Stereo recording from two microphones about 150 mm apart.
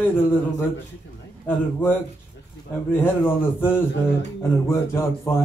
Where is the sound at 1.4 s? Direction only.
15° left (ahead or behind).